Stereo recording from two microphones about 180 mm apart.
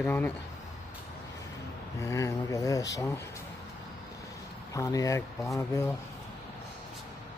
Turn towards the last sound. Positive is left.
turn(degrees=15)  # may be behind; listen again after turning